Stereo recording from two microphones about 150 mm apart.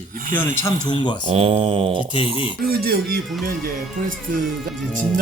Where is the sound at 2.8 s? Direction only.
90° right.